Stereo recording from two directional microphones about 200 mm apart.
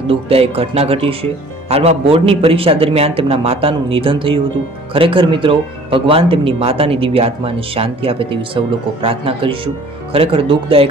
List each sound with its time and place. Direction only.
0.0 s speech: 30° right (ahead or behind)